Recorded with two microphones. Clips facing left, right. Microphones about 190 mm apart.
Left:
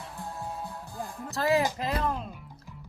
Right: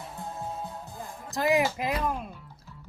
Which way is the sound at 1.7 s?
10° right (ahead or behind).